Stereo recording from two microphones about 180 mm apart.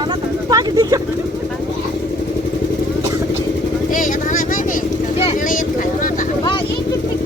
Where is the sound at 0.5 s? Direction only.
20° right (ahead or behind).